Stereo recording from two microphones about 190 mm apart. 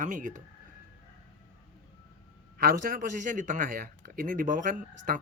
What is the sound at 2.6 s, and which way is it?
Speech, 50° right (ahead or behind).